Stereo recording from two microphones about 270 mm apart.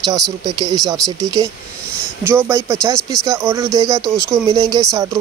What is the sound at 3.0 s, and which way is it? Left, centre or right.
Speech, centre.